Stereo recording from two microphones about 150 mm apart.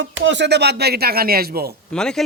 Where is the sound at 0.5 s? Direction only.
90° right.